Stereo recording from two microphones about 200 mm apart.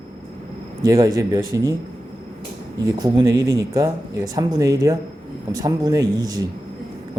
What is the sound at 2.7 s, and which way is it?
Speech, 20° right (ahead or behind).